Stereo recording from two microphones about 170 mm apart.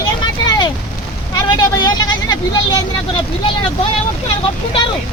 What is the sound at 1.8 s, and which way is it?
Speech, 25° left (ahead or behind).